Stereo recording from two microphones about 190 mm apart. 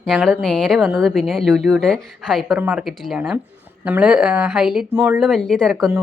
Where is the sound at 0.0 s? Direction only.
Centre (ahead or behind).